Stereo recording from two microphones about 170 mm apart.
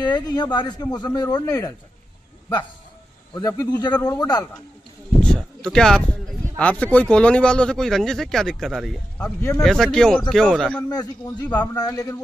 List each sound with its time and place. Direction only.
0.0 s speech: 25° left (ahead or behind)
3.3 s speech: 20° left (ahead or behind)
5.2 s speech: 5° left (ahead or behind)
10.8 s speech: 25° left (ahead or behind)